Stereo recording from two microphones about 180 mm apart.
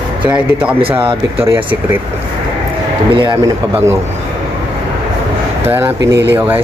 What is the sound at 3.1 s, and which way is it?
Speech, 30° right (ahead or behind).